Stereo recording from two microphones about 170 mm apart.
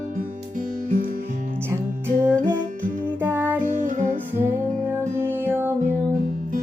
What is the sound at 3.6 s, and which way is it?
Music, 50° right (ahead or behind).